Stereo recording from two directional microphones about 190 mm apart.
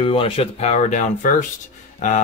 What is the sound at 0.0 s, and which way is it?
Speech, 30° left (ahead or behind).